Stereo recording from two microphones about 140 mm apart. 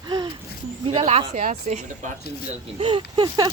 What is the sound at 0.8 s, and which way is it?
Speech, 45° right (ahead or behind).